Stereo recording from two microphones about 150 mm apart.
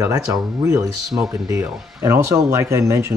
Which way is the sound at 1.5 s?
20° right (ahead or behind).